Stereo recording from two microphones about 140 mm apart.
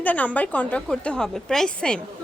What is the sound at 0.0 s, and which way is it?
A woman's voice, 10° left (ahead or behind).